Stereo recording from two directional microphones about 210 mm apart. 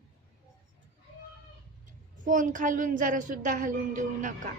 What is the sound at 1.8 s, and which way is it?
A woman's voice, 40° right (ahead or behind).